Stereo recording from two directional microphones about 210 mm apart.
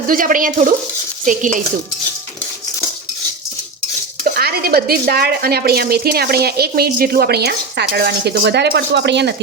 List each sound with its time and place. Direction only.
0.1 s stir: 40° right (ahead or behind)
1.2 s cutlery: 35° right (ahead or behind)
4.2 s a woman's voice: 45° right (ahead or behind)